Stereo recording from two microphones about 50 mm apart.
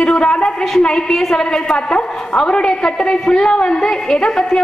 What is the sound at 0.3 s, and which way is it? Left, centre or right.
A woman's voice, centre.